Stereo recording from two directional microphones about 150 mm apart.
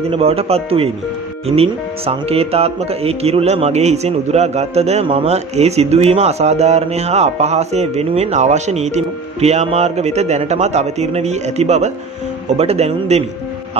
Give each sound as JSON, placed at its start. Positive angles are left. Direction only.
{"t": 0.1, "sound": "speech", "side_deg": -40}